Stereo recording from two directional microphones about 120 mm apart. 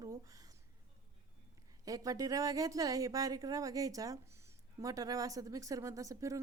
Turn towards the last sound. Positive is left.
turn(degrees=-25)  # may be behind; listen again after turning